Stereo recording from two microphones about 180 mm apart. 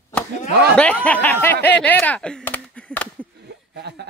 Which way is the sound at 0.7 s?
5° left (ahead or behind).